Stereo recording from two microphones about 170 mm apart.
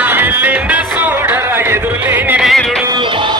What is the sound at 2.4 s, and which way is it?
Music, centre (ahead or behind).